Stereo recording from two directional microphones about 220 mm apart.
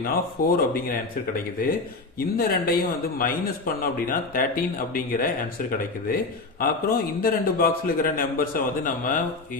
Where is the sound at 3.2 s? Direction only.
40° left (ahead or behind).